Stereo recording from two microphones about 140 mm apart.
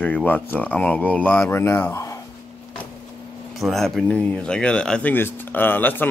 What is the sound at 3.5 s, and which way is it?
Speech, centre (ahead or behind).